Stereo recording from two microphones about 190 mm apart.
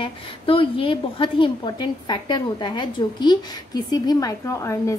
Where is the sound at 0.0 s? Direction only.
30° left (ahead or behind).